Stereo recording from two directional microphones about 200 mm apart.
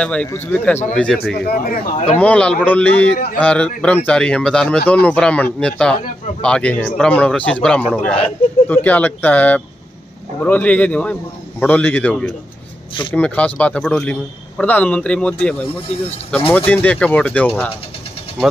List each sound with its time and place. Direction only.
0.0 s a man's voice: 5° left (ahead or behind)
1.3 s a man's voice: 50° left (ahead or behind)
2.1 s a man's voice: 5° left (ahead or behind)
16.5 s speech: 10° left (ahead or behind)